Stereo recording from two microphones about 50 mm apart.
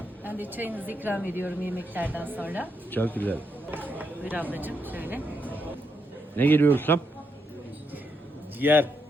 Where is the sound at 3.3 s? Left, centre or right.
Right.